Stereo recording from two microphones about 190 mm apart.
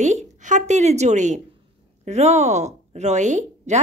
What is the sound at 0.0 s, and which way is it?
A woman's voice, 40° right (ahead or behind).